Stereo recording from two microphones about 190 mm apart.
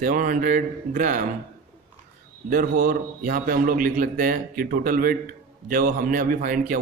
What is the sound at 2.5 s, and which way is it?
A man's voice, 50° right (ahead or behind).